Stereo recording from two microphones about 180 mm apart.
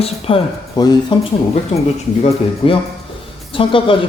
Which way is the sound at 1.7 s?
40° left (ahead or behind).